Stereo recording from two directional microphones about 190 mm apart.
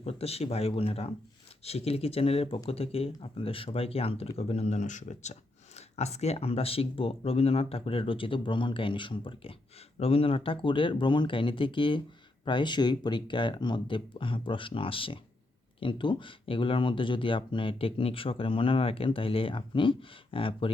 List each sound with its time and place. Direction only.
0.0 s speech: 30° left (ahead or behind)